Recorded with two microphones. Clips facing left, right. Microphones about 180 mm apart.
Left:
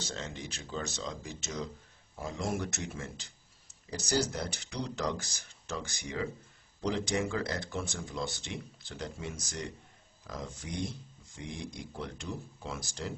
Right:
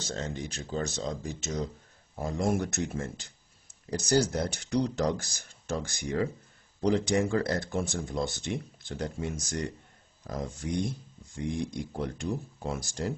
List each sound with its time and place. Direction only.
0.1 s speech: 40° right (ahead or behind)